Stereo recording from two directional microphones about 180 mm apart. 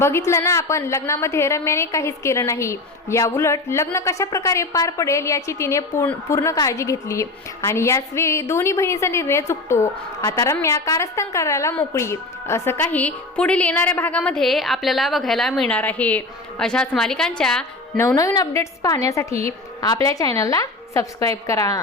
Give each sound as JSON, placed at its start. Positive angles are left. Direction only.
{"t": 0.0, "sound": "a woman's voice", "side_deg": 15}
{"t": 18.0, "sound": "a woman's voice", "side_deg": 15}